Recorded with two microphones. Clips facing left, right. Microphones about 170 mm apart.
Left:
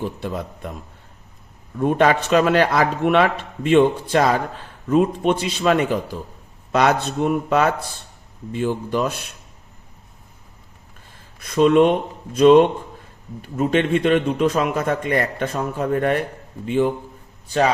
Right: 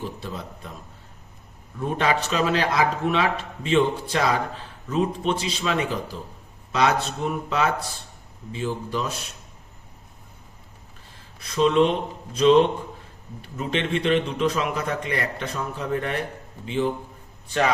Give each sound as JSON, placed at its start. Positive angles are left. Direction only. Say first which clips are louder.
{"t": 0.0, "sound": "a man's voice", "louder": "left 6 dB", "side_deg": 55}
{"t": 1.8, "sound": "a man's voice", "louder": "left 7 dB", "side_deg": 55}
{"t": 11.3, "sound": "a man's voice", "louder": "left 5 dB", "side_deg": 50}